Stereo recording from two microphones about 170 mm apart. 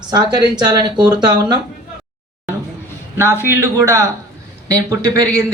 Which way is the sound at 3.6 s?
15° right (ahead or behind).